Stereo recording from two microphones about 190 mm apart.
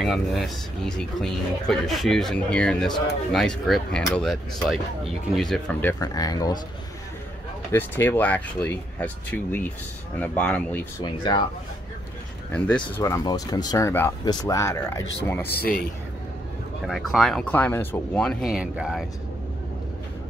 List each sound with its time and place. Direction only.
0.0 s speech: centre (ahead or behind)
6.0 s speech: 20° left (ahead or behind)
7.7 s speech: 10° left (ahead or behind)
11.0 s speech: 25° left (ahead or behind)
12.5 s speech: 5° left (ahead or behind)
15.4 s speech: 55° left (ahead or behind)
16.8 s speech: centre (ahead or behind)